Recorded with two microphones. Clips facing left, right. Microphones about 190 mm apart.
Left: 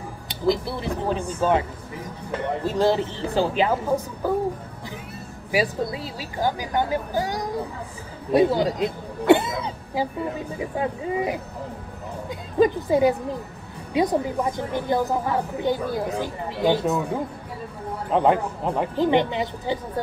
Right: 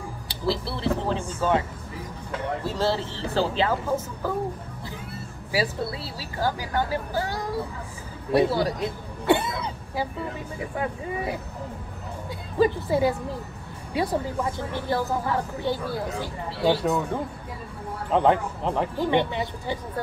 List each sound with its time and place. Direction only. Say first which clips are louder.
0.3 s a woman's voice: left 5 dB; 15° left (ahead or behind)
2.6 s a woman's voice: left 6 dB; 15° left (ahead or behind)
5.5 s a woman's voice: left 3 dB; 15° left (ahead or behind)
16.8 s a man's voice: left 1 dB; 5° left (ahead or behind)
18.9 s speech: left 5 dB; 20° left (ahead or behind)